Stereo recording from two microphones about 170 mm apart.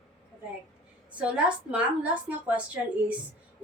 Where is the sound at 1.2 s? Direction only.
5° right (ahead or behind).